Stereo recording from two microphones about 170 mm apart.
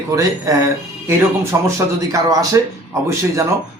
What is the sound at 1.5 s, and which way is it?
Speech, 15° right (ahead or behind).